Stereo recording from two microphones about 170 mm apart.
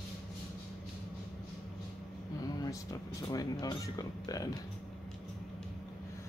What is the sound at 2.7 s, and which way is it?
Speech, 20° left (ahead or behind).